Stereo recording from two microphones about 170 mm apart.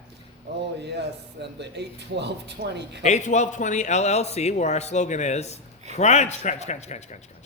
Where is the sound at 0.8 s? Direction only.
80° right.